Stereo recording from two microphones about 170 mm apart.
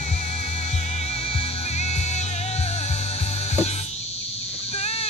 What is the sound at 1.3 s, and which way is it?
Music, 40° left (ahead or behind).